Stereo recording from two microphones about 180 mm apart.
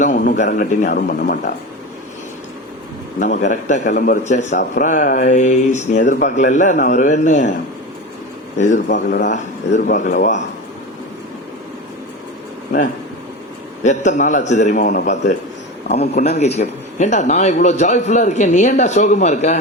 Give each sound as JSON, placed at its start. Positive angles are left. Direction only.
{"t": 0.0, "sound": "a man's voice", "side_deg": 45}
{"t": 3.2, "sound": "a man's voice", "side_deg": 45}
{"t": 8.5, "sound": "a man's voice", "side_deg": 40}
{"t": 13.8, "sound": "a man's voice", "side_deg": 40}